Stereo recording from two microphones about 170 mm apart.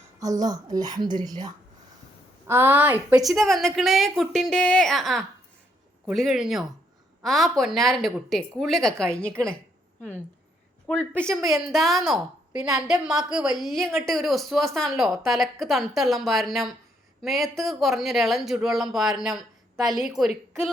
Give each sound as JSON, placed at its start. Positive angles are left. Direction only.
{"t": 0.2, "sound": "a woman's voice", "side_deg": -20}
{"t": 3.2, "sound": "speech", "side_deg": 0}
{"t": 10.8, "sound": "speech", "side_deg": 5}